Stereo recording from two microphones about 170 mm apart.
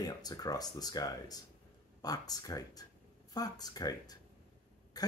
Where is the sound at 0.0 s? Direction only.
25° left (ahead or behind).